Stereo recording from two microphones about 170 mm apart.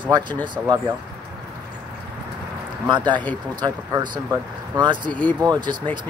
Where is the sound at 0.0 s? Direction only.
25° right (ahead or behind).